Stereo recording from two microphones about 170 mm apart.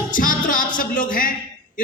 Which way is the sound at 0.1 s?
50° left (ahead or behind).